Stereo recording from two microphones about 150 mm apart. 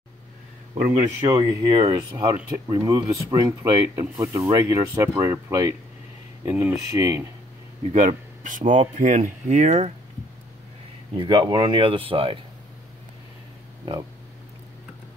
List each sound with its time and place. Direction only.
1.3 s speech: 25° right (ahead or behind)
7.9 s speech: 40° right (ahead or behind)
8.5 s speech: 60° right (ahead or behind)
11.1 s speech: 35° right (ahead or behind)